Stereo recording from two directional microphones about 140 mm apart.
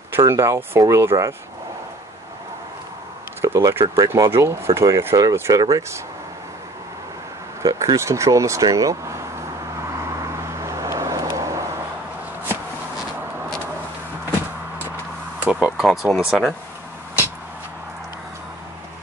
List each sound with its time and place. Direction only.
0.1 s speech: 20° right (ahead or behind)
3.4 s speech: 20° right (ahead or behind)
7.6 s speech: 25° right (ahead or behind)
10.3 s vehicle: 20° right (ahead or behind)
15.4 s speech: 5° right (ahead or behind)